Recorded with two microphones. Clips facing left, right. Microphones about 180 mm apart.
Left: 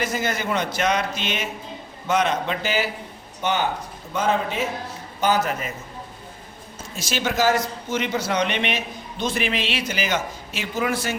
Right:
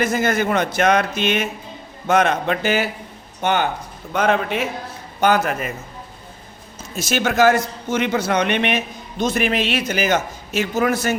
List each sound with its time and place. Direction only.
0.0 s a man's voice: 50° right (ahead or behind)
6.9 s a man's voice: 50° right (ahead or behind)